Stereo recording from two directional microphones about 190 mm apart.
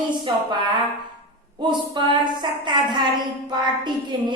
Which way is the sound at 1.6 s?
25° right (ahead or behind).